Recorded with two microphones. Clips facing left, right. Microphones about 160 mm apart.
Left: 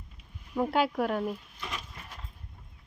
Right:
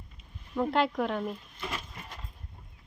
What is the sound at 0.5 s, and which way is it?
Speech, 5° left (ahead or behind).